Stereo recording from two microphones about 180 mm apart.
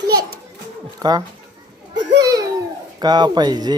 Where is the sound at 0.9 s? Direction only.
20° right (ahead or behind).